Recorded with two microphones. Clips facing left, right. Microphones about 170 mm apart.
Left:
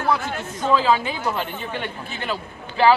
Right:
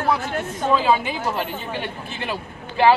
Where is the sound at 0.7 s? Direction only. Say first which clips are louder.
Even; 15° right (ahead or behind).